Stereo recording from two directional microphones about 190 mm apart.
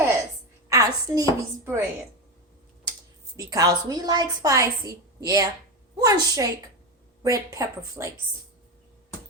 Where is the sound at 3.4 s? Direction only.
20° right (ahead or behind).